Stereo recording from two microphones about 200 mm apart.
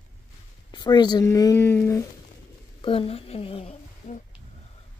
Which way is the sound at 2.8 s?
25° left (ahead or behind).